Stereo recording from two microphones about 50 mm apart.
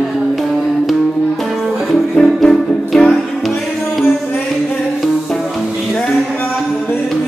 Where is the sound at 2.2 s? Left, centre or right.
Centre.